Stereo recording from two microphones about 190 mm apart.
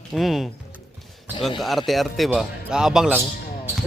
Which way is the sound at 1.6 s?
Centre (ahead or behind).